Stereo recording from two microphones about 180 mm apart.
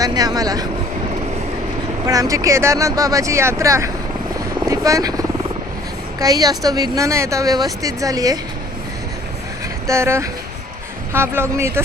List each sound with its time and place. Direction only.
0.0 s a woman's voice: 20° right (ahead or behind)
2.0 s speech: 20° right (ahead or behind)
4.4 s helicopter: 20° right (ahead or behind)
6.1 s a woman's voice: 20° right (ahead or behind)
9.8 s speech: 15° right (ahead or behind)